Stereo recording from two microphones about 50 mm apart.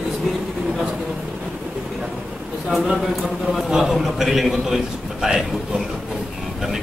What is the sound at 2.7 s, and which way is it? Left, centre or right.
A man's voice, centre.